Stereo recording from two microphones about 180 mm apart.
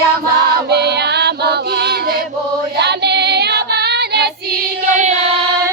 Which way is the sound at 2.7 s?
65° right (ahead or behind).